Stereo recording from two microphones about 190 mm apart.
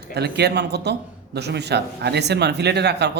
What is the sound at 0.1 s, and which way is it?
A man's voice, 60° right (ahead or behind).